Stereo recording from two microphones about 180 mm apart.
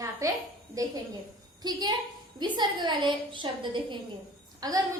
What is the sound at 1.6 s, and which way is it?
A woman's voice, 20° right (ahead or behind).